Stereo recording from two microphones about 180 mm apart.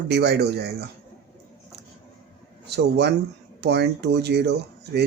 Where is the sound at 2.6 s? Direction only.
70° right (ahead or behind).